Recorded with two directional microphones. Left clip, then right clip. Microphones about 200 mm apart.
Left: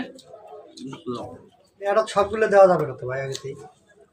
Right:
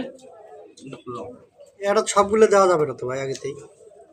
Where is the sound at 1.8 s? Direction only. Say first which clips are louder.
Right 2 dB; 55° right (ahead or behind).